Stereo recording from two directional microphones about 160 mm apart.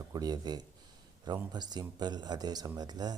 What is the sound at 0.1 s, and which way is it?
Speech, 25° right (ahead or behind).